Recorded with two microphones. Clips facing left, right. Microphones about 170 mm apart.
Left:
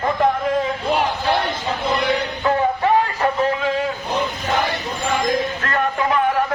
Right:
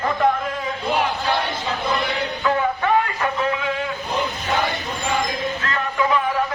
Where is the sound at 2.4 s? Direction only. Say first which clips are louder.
Left 2 dB; 35° left (ahead or behind).